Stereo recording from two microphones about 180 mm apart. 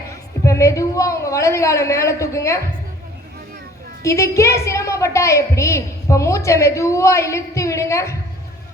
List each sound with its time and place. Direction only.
0.1 s a woman's voice: 15° left (ahead or behind)
4.0 s a woman's voice: 15° left (ahead or behind)